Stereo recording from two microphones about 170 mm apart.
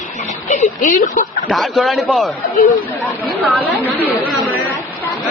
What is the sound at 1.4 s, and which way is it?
Speech, centre (ahead or behind).